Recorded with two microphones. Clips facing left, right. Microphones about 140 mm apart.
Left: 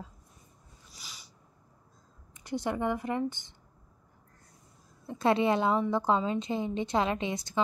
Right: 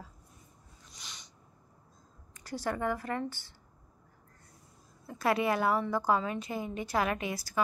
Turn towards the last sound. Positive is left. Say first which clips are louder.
# left 2 dB
turn(degrees=25)  # may be behind; listen again after turning